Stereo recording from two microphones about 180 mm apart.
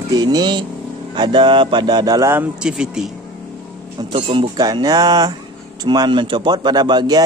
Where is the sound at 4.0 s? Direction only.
30° right (ahead or behind).